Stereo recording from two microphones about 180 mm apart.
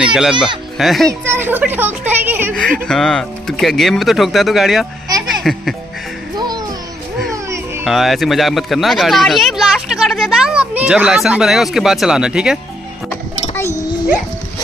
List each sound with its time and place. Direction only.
0.0 s speech: 5° right (ahead or behind)
1.2 s a child's voice: 10° right (ahead or behind)
2.9 s speech: centre (ahead or behind)
5.3 s music: centre (ahead or behind)
6.3 s music: 25° right (ahead or behind)
7.8 s speech: centre (ahead or behind)
13.6 s a sound: 15° left (ahead or behind)